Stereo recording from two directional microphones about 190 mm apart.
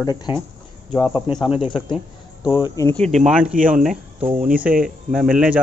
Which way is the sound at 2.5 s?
20° left (ahead or behind).